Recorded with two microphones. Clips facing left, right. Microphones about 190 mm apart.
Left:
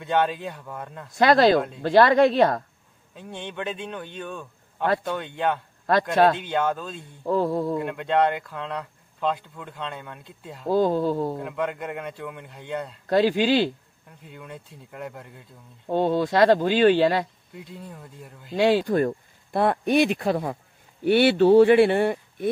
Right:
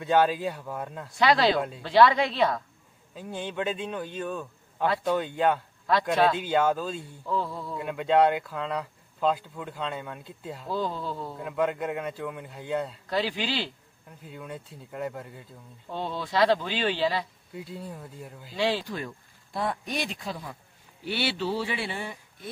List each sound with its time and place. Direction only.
0.0 s speech: 5° right (ahead or behind)
1.1 s speech: 45° left (ahead or behind)
3.2 s speech: centre (ahead or behind)
7.2 s speech: 45° left (ahead or behind)
7.8 s speech: centre (ahead or behind)
10.7 s speech: 50° left (ahead or behind)
11.3 s speech: centre (ahead or behind)
13.1 s speech: 50° left (ahead or behind)
14.0 s speech: centre (ahead or behind)
15.9 s speech: 50° left (ahead or behind)
17.5 s speech: centre (ahead or behind)
18.5 s speech: 50° left (ahead or behind)